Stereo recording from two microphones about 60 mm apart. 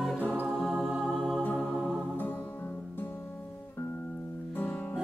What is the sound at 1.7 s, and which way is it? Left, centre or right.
Music, centre.